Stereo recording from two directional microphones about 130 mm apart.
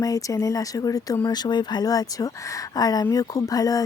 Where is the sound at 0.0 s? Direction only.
25° left (ahead or behind).